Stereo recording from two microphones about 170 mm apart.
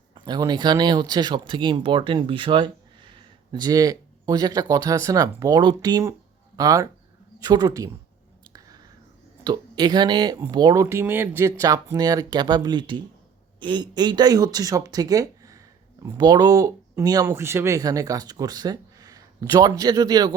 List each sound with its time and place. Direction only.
0.1 s speech: 25° right (ahead or behind)
8.5 s whispering: 20° right (ahead or behind)
9.4 s speech: 25° right (ahead or behind)